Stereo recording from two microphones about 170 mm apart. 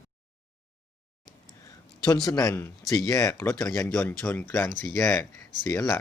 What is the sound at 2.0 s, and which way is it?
Speech, 20° left (ahead or behind).